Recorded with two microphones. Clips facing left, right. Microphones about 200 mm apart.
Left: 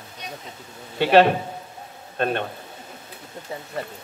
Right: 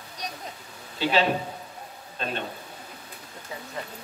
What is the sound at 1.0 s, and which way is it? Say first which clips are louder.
A man's voice: left 8 dB; 60° left (ahead or behind).